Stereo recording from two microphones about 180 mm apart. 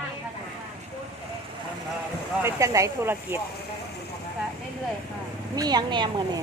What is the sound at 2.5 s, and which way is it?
Speech, 15° right (ahead or behind).